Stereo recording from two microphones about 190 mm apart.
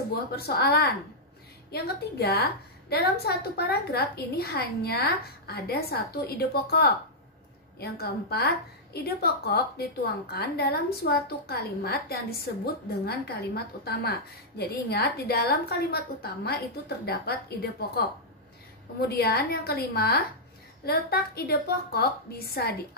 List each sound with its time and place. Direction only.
0.4 s a woman's voice: 55° left (ahead or behind)